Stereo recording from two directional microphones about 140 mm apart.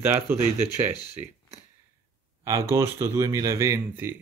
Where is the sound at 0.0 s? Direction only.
15° right (ahead or behind).